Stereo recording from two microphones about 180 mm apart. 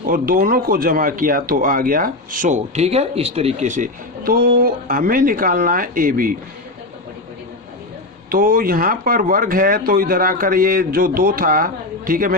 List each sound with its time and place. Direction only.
0.0 s speech: 55° right (ahead or behind)
8.3 s speech: 55° right (ahead or behind)